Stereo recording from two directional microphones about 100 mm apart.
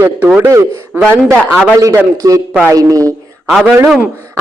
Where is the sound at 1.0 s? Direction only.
20° right (ahead or behind).